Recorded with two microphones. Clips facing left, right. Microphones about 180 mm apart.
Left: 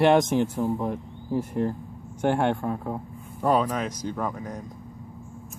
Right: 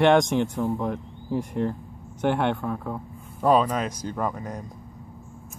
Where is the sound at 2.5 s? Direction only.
25° left (ahead or behind).